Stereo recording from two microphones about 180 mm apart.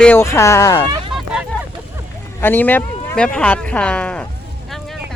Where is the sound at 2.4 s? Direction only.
10° left (ahead or behind).